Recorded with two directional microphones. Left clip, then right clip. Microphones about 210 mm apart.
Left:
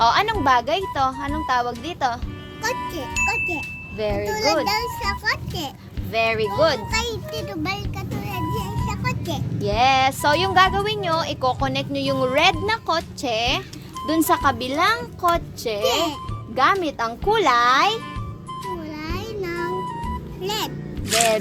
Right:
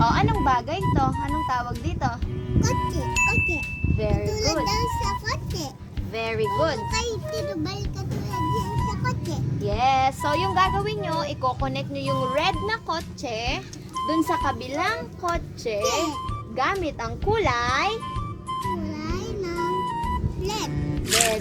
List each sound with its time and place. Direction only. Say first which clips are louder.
0.0 s music: left 4 dB; 45° left (ahead or behind)
0.4 s a woman's voice: left 4 dB; 45° left (ahead or behind)
2.6 s a child's voice: left 1 dB; 5° right (ahead or behind)
3.9 s a woman's voice: left 4 dB; 50° left (ahead or behind)
4.3 s a child's voice: left 6 dB; centre (ahead or behind)
6.1 s a woman's voice: left 6 dB; 50° left (ahead or behind)
6.9 s a child's voice: left 2 dB; 10° left (ahead or behind)
8.3 s a sound: right 2 dB; 10° left (ahead or behind)
9.6 s a woman's voice: left 4 dB; 50° left (ahead or behind)
15.9 s a child's voice: left 5 dB; 5° right (ahead or behind)
16.8 s a child's voice: left 5 dB; 55° left (ahead or behind)
18.6 s music: left 3 dB; 5° right (ahead or behind)
21.1 s a child's voice: left 3 dB; centre (ahead or behind)